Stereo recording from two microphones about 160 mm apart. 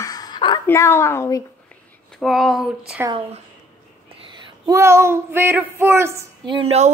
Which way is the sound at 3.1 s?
30° right (ahead or behind).